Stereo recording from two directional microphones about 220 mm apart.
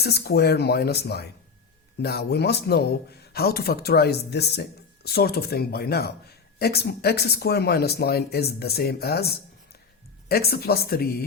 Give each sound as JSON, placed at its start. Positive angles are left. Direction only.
{"t": 0.0, "sound": "speech", "side_deg": 45}